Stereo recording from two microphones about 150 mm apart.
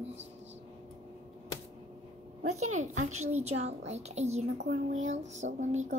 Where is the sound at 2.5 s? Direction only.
50° right (ahead or behind).